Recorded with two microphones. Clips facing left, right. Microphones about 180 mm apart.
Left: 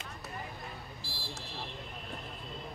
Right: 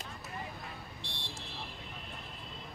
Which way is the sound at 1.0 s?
5° left (ahead or behind).